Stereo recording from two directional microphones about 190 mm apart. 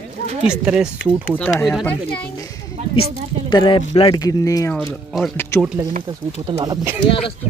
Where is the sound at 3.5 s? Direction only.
25° left (ahead or behind).